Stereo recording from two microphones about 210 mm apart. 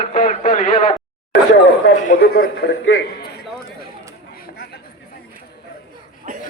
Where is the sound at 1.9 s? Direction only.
35° left (ahead or behind); by 3.0 s 55° left (ahead or behind).